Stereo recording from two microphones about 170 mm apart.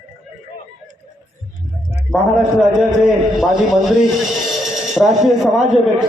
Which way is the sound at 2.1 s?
5° right (ahead or behind).